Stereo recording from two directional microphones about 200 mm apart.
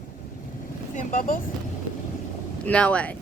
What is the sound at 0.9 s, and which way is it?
Speech, 40° left (ahead or behind).